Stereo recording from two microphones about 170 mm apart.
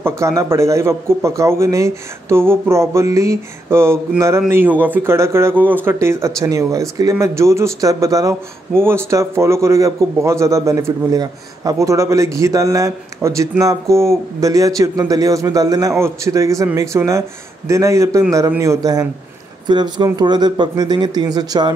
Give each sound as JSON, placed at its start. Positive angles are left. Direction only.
{"t": 0.0, "sound": "speech", "side_deg": -15}